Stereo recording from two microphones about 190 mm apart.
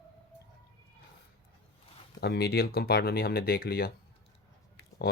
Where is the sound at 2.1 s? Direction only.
55° left (ahead or behind).